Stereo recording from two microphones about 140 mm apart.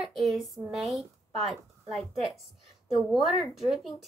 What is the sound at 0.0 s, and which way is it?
A woman's voice, centre (ahead or behind).